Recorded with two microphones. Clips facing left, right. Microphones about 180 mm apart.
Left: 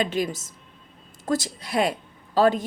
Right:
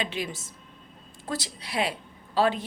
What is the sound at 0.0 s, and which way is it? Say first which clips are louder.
A woman's voice: left 7 dB; 45° left (ahead or behind).